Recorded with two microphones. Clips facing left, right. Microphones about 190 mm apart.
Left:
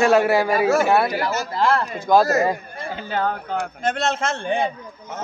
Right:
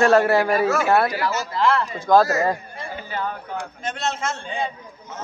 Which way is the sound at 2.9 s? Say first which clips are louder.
Left 5 dB; 80° left.